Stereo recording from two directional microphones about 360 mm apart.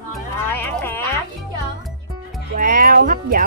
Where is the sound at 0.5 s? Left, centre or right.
Centre.